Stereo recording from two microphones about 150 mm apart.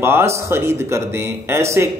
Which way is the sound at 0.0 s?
15° right (ahead or behind).